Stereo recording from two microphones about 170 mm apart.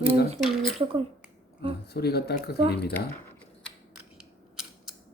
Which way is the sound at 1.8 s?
70° left (ahead or behind).